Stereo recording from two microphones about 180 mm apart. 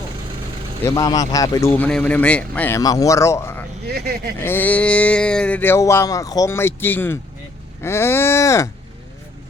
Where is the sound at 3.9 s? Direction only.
60° right (ahead or behind).